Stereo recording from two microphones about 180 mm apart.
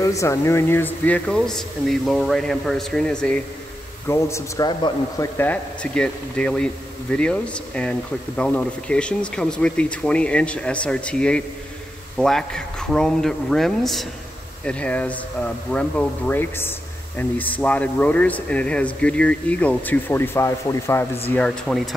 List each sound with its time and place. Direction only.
0.0 s speech: 15° left (ahead or behind)
4.1 s speech: 15° left (ahead or behind)
5.4 s speech: 10° left (ahead or behind)
21.3 s speech: 5° left (ahead or behind)